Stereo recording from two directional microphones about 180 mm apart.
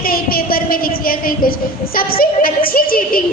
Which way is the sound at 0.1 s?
55° left (ahead or behind).